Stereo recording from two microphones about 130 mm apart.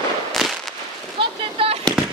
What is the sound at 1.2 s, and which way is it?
Speech, 45° right (ahead or behind).